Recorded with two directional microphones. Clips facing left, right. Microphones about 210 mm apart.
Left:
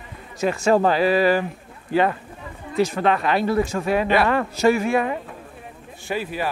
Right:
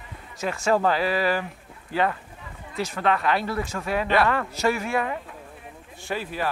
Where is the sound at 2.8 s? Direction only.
20° left (ahead or behind).